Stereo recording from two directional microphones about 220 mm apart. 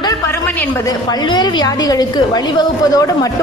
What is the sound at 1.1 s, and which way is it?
A woman's voice, 20° left (ahead or behind).